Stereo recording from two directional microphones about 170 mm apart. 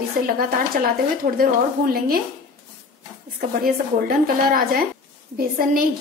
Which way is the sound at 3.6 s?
60° right (ahead or behind).